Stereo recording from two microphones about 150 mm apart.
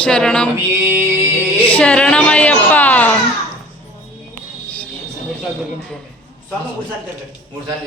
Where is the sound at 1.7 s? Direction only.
5° left (ahead or behind).